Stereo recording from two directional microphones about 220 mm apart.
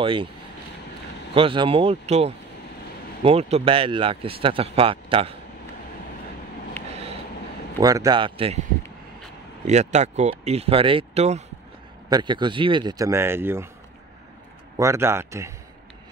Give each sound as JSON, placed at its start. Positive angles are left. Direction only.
{"t": 0.0, "sound": "speech", "side_deg": -25}
{"t": 1.3, "sound": "speech", "side_deg": -25}
{"t": 6.8, "sound": "a sound", "side_deg": 10}
{"t": 7.8, "sound": "speech", "side_deg": -15}
{"t": 9.7, "sound": "speech", "side_deg": -30}
{"t": 14.8, "sound": "speech", "side_deg": -10}